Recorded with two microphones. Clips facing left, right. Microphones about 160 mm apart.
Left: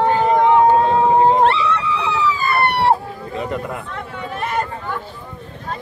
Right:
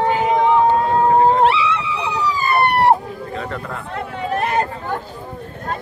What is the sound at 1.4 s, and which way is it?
Dog, 5° right (ahead or behind).